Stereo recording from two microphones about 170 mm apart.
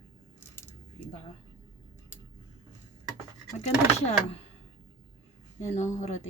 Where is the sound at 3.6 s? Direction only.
40° left (ahead or behind).